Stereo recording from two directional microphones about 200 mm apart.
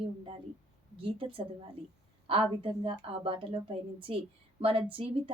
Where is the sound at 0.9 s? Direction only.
25° right (ahead or behind).